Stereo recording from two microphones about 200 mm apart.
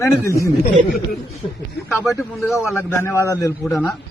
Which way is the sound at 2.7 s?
15° left (ahead or behind).